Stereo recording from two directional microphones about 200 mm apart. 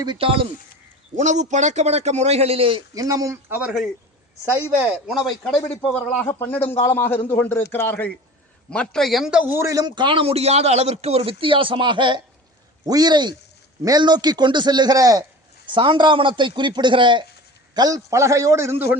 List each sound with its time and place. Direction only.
0.0 s a man's voice: 25° right (ahead or behind)
4.8 s a man's voice: 5° right (ahead or behind)